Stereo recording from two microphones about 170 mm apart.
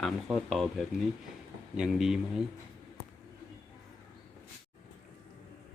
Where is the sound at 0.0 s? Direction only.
Centre (ahead or behind).